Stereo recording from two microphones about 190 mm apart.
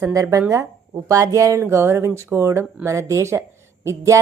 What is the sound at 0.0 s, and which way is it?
A woman's voice, 15° right (ahead or behind).